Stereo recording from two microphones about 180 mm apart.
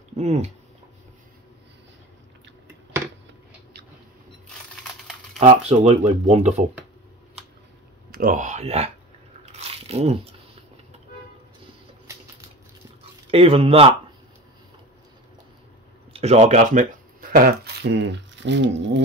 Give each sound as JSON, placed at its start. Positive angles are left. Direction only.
{"t": 0.2, "sound": "speech", "side_deg": -40}
{"t": 5.4, "sound": "speech", "side_deg": -35}
{"t": 8.1, "sound": "speech", "side_deg": -50}
{"t": 9.5, "sound": "biting", "side_deg": -35}
{"t": 13.3, "sound": "speech", "side_deg": -30}
{"t": 16.1, "sound": "speech", "side_deg": -35}